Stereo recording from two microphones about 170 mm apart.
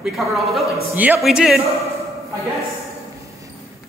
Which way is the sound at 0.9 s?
10° right (ahead or behind).